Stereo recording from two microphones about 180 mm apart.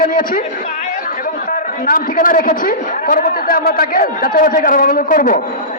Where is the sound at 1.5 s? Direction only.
50° left (ahead or behind).